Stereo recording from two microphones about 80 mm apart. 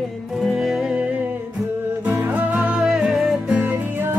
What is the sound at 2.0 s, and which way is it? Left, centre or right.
Music, right.